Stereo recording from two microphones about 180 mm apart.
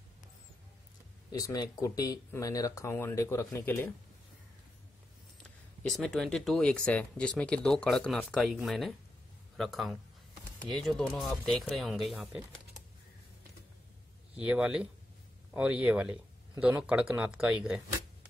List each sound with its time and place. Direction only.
1.3 s speech: 20° left (ahead or behind)
5.9 s speech: centre (ahead or behind)
14.3 s speech: 5° right (ahead or behind)